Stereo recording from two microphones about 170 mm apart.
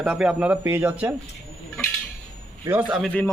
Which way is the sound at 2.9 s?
Centre (ahead or behind).